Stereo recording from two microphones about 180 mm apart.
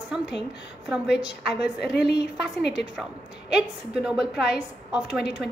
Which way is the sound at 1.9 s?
70° left (ahead or behind).